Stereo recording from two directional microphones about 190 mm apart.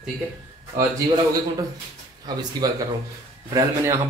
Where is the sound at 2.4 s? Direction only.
20° right (ahead or behind).